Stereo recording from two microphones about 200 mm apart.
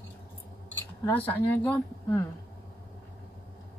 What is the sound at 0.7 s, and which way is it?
Speech, 10° left (ahead or behind).